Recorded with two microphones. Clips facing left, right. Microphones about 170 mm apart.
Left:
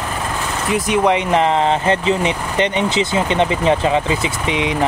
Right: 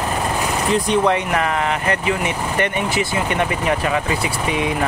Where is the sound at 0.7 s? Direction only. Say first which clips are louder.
Left 2 dB; 10° left (ahead or behind).